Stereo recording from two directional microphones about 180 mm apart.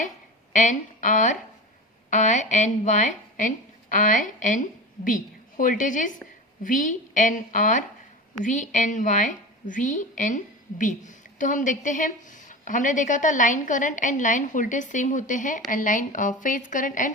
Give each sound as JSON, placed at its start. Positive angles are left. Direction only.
{"t": 0.5, "sound": "a woman's voice", "side_deg": 45}